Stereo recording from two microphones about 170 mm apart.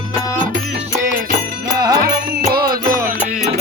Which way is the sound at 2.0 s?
60° right (ahead or behind).